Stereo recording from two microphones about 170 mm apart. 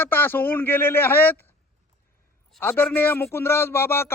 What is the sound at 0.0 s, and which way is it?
Speech, 10° left (ahead or behind).